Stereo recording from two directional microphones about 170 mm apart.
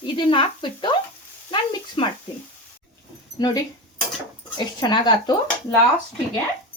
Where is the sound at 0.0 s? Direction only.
30° left (ahead or behind).